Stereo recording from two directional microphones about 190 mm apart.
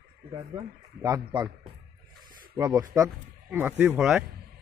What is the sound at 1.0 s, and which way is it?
A man's voice, 20° right (ahead or behind).